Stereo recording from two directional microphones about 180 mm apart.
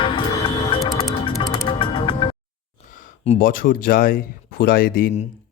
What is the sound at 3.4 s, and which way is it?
Speech, 50° left (ahead or behind).